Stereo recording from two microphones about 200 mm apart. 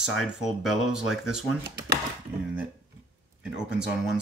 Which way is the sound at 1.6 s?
55° right (ahead or behind).